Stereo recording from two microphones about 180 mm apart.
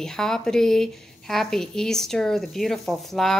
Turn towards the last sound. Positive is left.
turn(degrees=0)  # may be behind; listen again after turning